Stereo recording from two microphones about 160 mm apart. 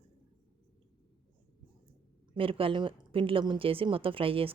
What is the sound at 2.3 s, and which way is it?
A woman's voice, 35° right (ahead or behind).